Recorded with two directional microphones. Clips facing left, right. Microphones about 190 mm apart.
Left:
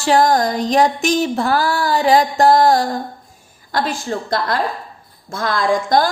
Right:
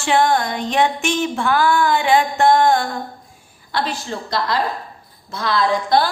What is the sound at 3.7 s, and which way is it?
A woman's voice, 45° left (ahead or behind).